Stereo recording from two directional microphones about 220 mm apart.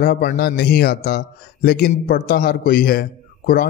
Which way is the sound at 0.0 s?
40° left (ahead or behind).